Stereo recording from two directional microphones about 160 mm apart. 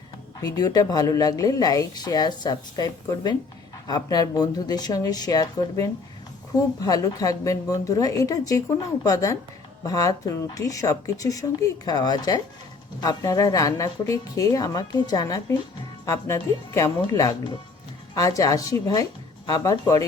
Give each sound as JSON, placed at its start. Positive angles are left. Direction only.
{"t": 0.3, "sound": "speech", "side_deg": 25}